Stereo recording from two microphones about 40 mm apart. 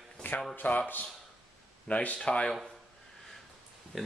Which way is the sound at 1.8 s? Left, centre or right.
Left.